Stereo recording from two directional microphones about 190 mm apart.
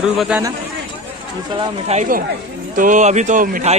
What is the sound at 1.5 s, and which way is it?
Speech, 25° right (ahead or behind).